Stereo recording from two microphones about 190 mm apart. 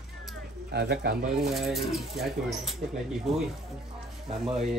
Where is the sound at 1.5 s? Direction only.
Centre (ahead or behind).